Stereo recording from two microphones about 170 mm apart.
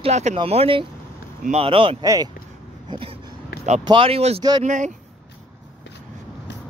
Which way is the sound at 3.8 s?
30° right (ahead or behind).